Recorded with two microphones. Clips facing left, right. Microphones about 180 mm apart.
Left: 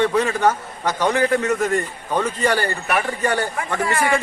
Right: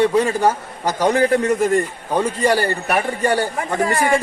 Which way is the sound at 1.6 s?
10° right (ahead or behind).